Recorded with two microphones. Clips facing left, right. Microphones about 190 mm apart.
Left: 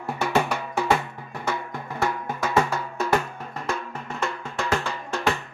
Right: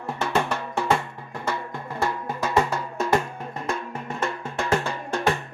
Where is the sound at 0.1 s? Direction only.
5° left (ahead or behind).